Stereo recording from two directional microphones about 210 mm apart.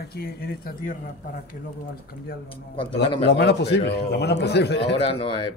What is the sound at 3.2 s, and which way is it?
A man's voice, 55° left (ahead or behind).